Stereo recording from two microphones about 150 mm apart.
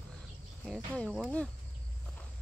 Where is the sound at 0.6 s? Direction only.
5° left (ahead or behind).